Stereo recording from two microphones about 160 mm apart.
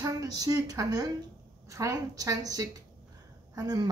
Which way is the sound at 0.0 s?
20° right (ahead or behind).